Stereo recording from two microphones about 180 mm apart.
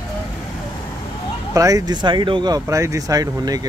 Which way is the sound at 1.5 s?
20° right (ahead or behind).